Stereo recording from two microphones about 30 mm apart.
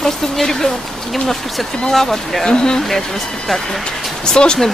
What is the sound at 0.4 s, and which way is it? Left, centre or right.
Speech, centre.